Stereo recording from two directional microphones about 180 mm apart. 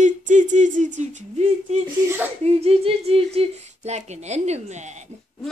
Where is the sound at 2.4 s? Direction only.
35° right (ahead or behind).